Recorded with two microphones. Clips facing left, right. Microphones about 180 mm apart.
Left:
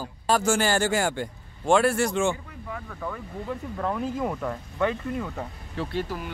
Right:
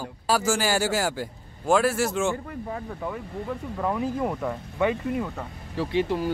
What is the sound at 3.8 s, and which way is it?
Speech, 5° right (ahead or behind).